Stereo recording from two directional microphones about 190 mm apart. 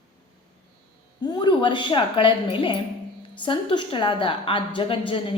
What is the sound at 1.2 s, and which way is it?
A woman's voice, 20° left (ahead or behind).